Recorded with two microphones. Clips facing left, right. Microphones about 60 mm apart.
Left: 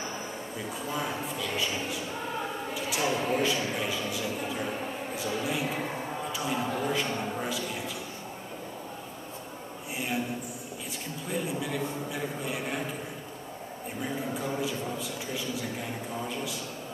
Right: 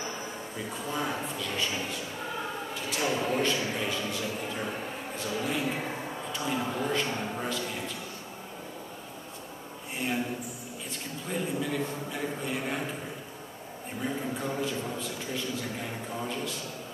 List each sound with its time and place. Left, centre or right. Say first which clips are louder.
0.8 s a man's voice: right 1 dB; centre
11.2 s a man's voice: right 1 dB; centre
14.0 s a man's voice: right 1 dB; centre